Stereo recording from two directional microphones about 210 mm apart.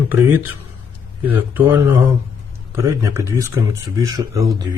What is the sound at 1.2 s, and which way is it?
A man's voice, 10° right (ahead or behind).